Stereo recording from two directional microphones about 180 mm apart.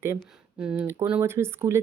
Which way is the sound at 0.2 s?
5° right (ahead or behind).